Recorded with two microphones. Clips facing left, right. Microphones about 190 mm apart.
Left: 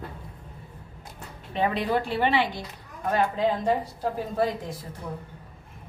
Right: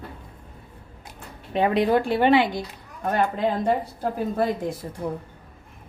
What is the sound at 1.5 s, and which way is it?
Speech, 50° right (ahead or behind).